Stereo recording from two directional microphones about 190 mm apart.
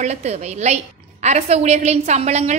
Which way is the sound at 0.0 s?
35° right (ahead or behind).